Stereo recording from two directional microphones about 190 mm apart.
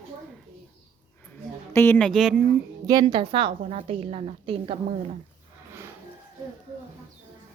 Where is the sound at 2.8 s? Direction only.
20° right (ahead or behind).